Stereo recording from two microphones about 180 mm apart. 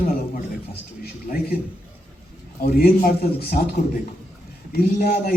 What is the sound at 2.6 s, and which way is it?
A man's voice, 55° left (ahead or behind).